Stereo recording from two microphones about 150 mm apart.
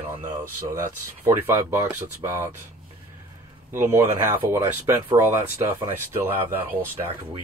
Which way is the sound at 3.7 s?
15° right (ahead or behind).